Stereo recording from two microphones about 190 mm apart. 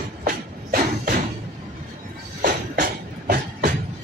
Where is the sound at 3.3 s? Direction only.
50° right (ahead or behind).